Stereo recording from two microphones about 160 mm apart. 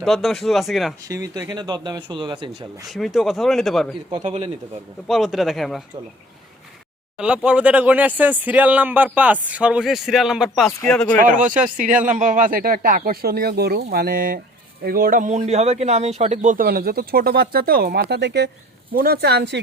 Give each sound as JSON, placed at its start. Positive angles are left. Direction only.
{"t": 0.0, "sound": "speech", "side_deg": 0}
{"t": 1.0, "sound": "speech", "side_deg": -20}
{"t": 2.8, "sound": "speech", "side_deg": 0}
{"t": 4.2, "sound": "speech", "side_deg": -40}
{"t": 5.0, "sound": "speech", "side_deg": 0}
{"t": 7.2, "sound": "speech", "side_deg": -5}
{"t": 11.2, "sound": "a man's voice", "side_deg": -55}
{"t": 18.9, "sound": "speech", "side_deg": -75}